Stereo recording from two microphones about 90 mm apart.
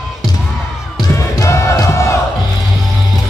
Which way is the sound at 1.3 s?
35° left (ahead or behind).